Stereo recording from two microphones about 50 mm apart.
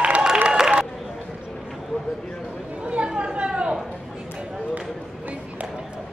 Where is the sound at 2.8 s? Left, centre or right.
Right.